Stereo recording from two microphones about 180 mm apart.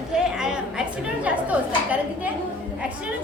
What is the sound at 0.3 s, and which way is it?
A woman's voice, 5° right (ahead or behind).